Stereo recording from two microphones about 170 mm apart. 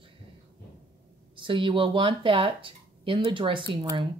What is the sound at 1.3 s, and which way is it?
Speech, 30° right (ahead or behind).